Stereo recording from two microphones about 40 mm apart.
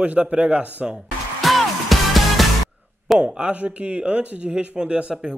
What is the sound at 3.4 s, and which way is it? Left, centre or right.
Speech, right.